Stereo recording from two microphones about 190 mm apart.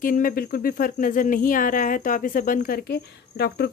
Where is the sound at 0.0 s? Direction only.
45° left (ahead or behind).